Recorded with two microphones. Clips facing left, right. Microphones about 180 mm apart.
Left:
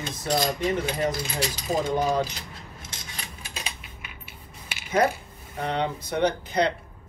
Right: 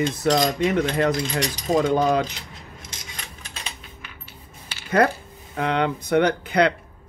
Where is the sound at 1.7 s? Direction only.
70° right (ahead or behind).